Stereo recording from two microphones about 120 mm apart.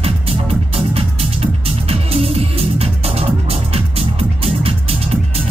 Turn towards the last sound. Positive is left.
turn(degrees=-55)  # may be behind; listen again after turning